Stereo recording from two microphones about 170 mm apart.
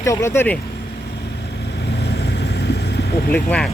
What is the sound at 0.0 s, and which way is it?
Speech, 15° left (ahead or behind).